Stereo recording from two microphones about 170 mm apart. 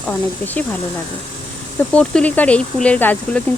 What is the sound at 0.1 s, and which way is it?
Speech, 10° left (ahead or behind).